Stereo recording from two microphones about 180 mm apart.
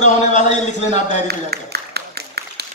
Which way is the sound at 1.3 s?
65° right (ahead or behind).